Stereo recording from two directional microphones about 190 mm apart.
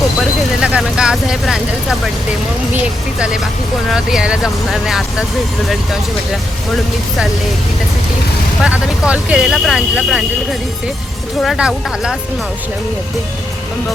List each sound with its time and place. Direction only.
0.2 s vehicle: 5° right (ahead or behind)
2.7 s speech: 5° right (ahead or behind)
8.6 s speech: 5° right (ahead or behind)